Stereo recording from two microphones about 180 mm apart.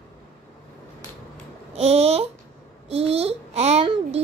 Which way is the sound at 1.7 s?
35° right (ahead or behind).